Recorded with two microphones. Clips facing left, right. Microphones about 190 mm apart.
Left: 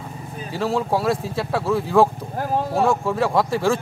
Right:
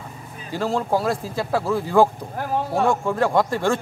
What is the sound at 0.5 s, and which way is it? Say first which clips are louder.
Speech: even; centre (ahead or behind).